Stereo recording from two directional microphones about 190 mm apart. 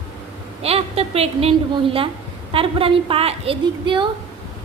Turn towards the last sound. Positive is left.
turn(degrees=-25)  # may be behind; listen again after turning